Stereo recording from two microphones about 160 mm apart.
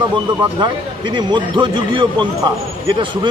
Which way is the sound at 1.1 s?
30° right (ahead or behind).